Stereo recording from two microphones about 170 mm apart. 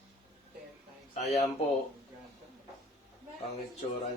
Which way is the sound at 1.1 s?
40° left (ahead or behind).